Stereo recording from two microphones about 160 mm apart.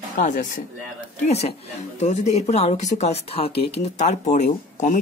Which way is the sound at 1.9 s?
45° left (ahead or behind).